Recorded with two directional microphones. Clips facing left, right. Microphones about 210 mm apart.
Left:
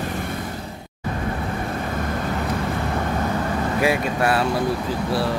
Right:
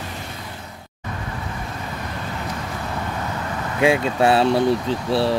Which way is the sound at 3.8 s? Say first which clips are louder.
Right 5 dB; 25° right (ahead or behind).